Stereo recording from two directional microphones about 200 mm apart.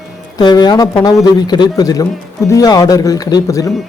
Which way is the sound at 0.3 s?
20° left (ahead or behind).